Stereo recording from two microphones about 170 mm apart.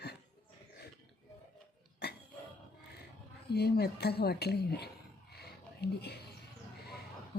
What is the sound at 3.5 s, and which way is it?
Speech, 70° left (ahead or behind).